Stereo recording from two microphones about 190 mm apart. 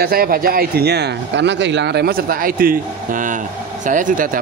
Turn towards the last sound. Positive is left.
turn(degrees=-45)  # may be behind; listen again after turning